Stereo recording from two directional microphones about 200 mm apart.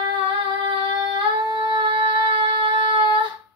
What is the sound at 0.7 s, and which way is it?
Singing, 25° right (ahead or behind).